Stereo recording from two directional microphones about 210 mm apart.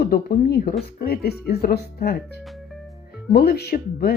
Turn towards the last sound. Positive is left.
turn(degrees=45)  # may be behind; listen again after turning